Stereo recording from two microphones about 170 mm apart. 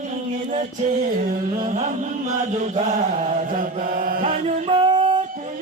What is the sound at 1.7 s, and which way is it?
Music, 45° right (ahead or behind).